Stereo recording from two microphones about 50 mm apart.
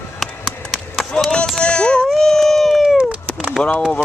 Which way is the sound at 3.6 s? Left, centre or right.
Left.